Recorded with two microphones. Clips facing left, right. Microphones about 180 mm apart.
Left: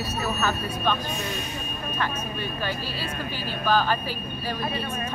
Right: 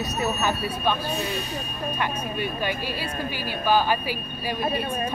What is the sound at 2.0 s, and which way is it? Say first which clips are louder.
Speech: right 2 dB; 15° right (ahead or behind).